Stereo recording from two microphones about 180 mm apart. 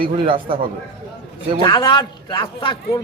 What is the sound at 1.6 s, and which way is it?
A man's voice, 25° left (ahead or behind).